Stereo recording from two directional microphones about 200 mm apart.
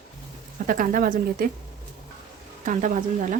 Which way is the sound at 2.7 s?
40° right (ahead or behind).